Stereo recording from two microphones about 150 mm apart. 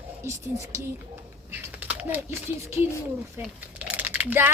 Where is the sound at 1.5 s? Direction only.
10° right (ahead or behind).